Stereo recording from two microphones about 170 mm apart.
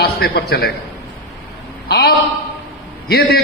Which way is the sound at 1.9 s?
65° left (ahead or behind).